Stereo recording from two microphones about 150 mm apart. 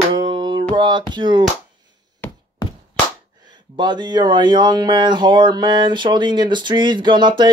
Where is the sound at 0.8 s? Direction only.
30° right (ahead or behind).